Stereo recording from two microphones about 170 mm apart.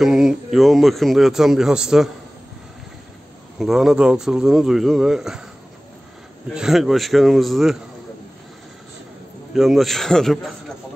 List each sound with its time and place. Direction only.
0.0 s speech: 5° right (ahead or behind)
3.5 s speech: centre (ahead or behind)
6.5 s speech: 5° right (ahead or behind)
9.5 s speech: centre (ahead or behind)